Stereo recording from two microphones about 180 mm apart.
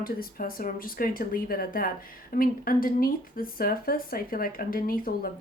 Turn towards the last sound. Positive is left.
turn(degrees=55)  # may be behind; listen again after turning